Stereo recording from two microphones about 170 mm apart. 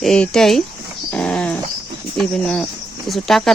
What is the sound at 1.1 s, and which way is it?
Dog, 5° left (ahead or behind).